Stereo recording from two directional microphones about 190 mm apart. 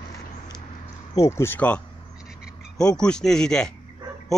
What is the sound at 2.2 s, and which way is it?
Frog, 5° right (ahead or behind).